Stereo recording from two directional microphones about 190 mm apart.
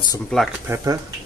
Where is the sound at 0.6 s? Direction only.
15° right (ahead or behind).